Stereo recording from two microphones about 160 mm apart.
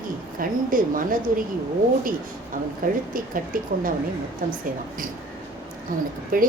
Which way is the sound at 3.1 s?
60° right (ahead or behind).